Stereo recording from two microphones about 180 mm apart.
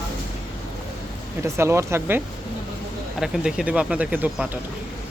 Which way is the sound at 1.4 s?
15° right (ahead or behind).